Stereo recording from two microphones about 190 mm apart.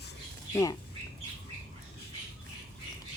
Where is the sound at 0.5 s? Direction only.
20° left (ahead or behind).